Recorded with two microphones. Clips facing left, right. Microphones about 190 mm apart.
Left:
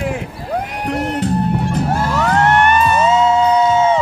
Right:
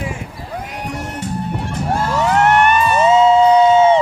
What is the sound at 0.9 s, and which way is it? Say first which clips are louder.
Music: left 9 dB; 75° left (ahead or behind).